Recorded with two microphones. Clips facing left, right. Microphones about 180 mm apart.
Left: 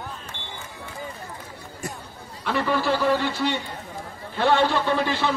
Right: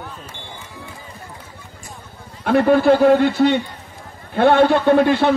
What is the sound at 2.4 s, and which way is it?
A man's voice, 55° right (ahead or behind).